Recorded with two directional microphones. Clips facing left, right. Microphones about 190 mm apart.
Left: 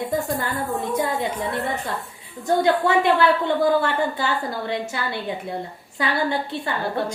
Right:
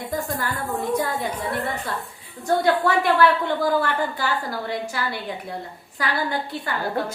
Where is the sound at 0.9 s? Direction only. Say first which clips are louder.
Left 3 dB; 20° left (ahead or behind).